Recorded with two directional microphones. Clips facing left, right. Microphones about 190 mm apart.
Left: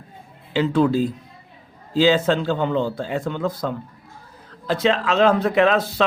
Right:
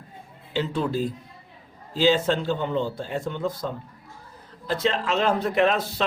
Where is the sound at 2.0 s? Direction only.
90° left.